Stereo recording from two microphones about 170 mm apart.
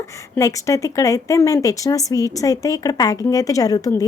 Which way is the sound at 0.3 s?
20° left (ahead or behind).